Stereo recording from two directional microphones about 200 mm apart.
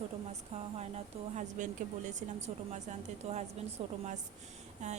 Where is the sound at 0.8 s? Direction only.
35° right (ahead or behind).